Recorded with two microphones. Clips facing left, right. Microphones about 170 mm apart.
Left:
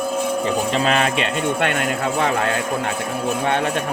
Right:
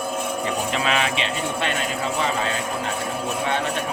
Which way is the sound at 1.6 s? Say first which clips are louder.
Left 4 dB; 60° left (ahead or behind).